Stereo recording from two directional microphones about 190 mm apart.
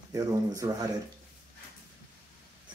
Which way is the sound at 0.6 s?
20° right (ahead or behind).